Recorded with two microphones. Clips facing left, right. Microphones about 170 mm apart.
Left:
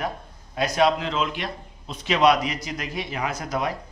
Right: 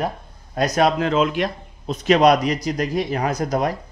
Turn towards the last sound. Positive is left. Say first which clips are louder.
# right 6 dB
turn(degrees=-40)  # may be behind; listen again after turning